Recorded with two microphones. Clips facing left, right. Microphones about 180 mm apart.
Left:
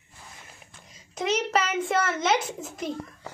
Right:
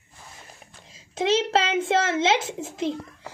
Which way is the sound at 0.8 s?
30° right (ahead or behind).